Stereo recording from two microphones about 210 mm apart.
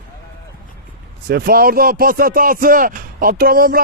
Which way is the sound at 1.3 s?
45° right (ahead or behind).